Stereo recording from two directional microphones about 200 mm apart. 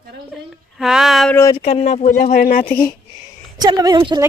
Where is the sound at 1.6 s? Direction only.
30° left (ahead or behind).